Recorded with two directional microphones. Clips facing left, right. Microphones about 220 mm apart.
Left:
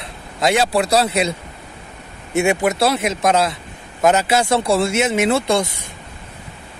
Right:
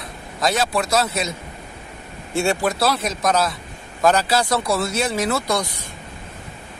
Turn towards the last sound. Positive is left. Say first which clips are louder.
# left 5 dB
turn(degrees=25)  # may be behind; listen again after turning